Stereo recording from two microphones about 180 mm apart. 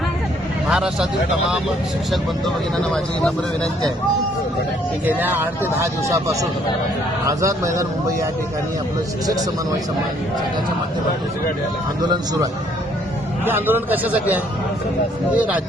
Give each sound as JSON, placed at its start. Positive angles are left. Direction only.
{"t": 0.7, "sound": "speech", "side_deg": -5}
{"t": 2.7, "sound": "speech", "side_deg": 5}
{"t": 5.0, "sound": "speech", "side_deg": -10}
{"t": 12.1, "sound": "a man's voice", "side_deg": -20}
{"t": 13.4, "sound": "speech", "side_deg": -10}